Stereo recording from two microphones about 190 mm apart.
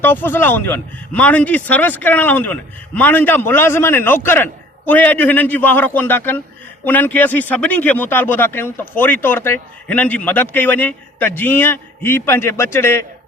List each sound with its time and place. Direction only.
0.0 s a man's voice: 10° left (ahead or behind)